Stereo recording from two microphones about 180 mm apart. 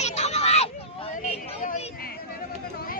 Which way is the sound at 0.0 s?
40° left (ahead or behind).